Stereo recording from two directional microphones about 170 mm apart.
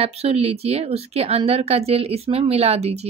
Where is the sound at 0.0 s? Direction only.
35° right (ahead or behind).